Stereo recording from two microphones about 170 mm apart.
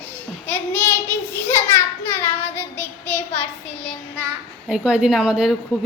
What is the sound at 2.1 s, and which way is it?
A woman's voice, 10° left (ahead or behind).